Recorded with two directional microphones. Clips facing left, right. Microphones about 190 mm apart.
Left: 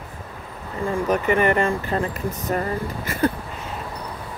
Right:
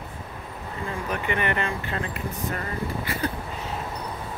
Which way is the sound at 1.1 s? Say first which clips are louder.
Left 8 dB; 40° left (ahead or behind).